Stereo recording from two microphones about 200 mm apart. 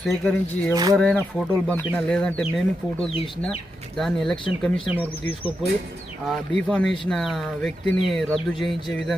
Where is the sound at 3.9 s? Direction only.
Centre (ahead or behind).